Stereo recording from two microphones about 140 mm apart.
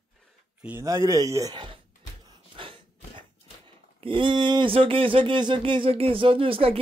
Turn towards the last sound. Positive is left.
turn(degrees=-40)  # may be behind; listen again after turning